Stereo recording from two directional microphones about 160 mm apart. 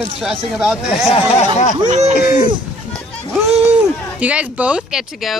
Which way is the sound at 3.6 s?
10° right (ahead or behind).